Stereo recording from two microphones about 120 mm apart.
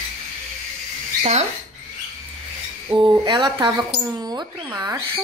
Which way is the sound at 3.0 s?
35° right (ahead or behind).